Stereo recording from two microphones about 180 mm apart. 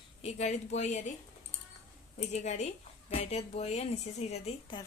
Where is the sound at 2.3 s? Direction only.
40° left (ahead or behind).